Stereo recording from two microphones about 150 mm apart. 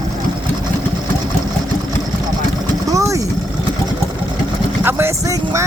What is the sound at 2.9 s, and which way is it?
Vehicle, 20° right (ahead or behind).